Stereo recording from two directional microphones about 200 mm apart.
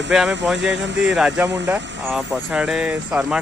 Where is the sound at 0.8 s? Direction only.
65° right (ahead or behind).